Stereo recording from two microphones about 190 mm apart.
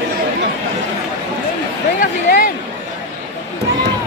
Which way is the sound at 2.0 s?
45° left (ahead or behind).